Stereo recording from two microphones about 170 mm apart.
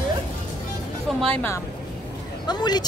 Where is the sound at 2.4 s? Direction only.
25° left (ahead or behind).